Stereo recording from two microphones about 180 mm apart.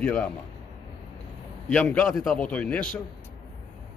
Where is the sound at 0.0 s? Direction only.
5° left (ahead or behind).